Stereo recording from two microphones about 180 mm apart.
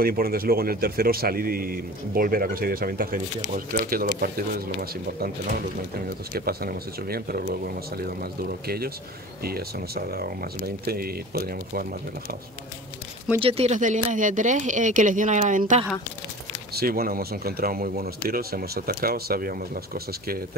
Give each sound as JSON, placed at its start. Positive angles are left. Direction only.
{"t": 0.0, "sound": "a man's voice", "side_deg": -55}
{"t": 6.3, "sound": "a man's voice", "side_deg": -60}
{"t": 13.4, "sound": "speech", "side_deg": -35}
{"t": 16.7, "sound": "a man's voice", "side_deg": -55}